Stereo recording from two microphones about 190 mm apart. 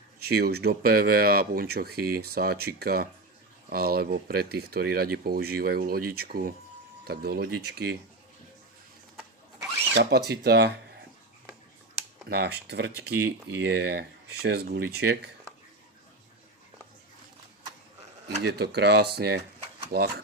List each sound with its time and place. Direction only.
0.2 s speech: 55° right (ahead or behind)
9.9 s speech: 60° right (ahead or behind)
12.3 s speech: 60° right (ahead or behind)
18.4 s speech: 60° right (ahead or behind)